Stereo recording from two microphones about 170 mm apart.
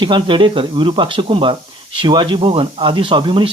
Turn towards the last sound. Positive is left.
turn(degrees=-30)  # may be behind; listen again after turning